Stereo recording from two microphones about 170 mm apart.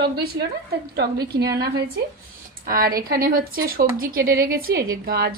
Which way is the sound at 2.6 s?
60° right (ahead or behind).